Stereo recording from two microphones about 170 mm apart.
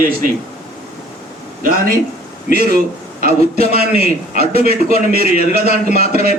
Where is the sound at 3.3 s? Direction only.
40° left (ahead or behind).